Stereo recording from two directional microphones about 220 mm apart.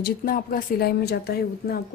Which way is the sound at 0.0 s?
40° left (ahead or behind).